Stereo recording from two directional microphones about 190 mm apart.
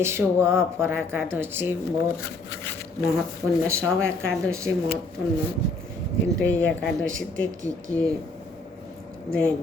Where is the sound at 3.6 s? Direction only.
15° right (ahead or behind).